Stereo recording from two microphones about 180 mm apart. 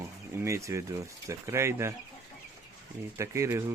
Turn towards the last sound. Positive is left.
turn(degrees=-15)  # may be behind; listen again after turning